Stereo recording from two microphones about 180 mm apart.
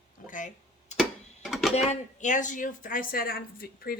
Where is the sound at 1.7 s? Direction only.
40° left (ahead or behind).